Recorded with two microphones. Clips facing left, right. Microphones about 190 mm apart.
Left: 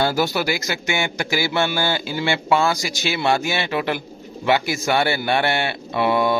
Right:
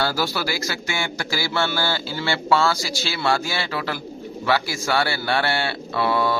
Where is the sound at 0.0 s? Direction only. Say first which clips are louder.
Left 4 dB; 20° left (ahead or behind).